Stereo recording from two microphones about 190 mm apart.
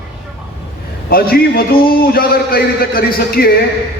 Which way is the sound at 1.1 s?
50° left (ahead or behind).